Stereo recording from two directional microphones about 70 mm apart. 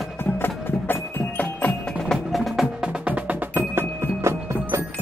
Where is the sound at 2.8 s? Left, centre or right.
Centre.